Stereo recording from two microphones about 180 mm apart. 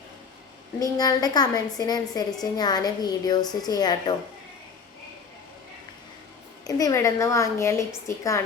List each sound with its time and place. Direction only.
0.8 s speech: 20° left (ahead or behind)
6.7 s a woman's voice: 20° left (ahead or behind)